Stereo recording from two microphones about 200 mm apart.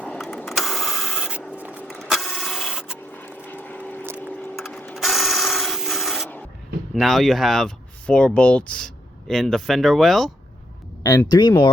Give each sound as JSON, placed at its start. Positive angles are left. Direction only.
{"t": 0.0, "sound": "printer", "side_deg": 5}
{"t": 1.5, "sound": "vehicle", "side_deg": -5}
{"t": 1.8, "sound": "printer", "side_deg": 0}
{"t": 3.2, "sound": "vehicle", "side_deg": 10}
{"t": 4.2, "sound": "tools", "side_deg": 5}
{"t": 6.9, "sound": "speech", "side_deg": 0}
{"t": 11.0, "sound": "speech", "side_deg": 20}